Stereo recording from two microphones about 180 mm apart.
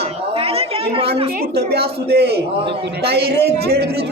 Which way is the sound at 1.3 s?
60° right (ahead or behind).